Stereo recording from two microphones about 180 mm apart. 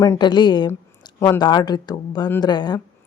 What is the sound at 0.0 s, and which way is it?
Speech, 25° left (ahead or behind).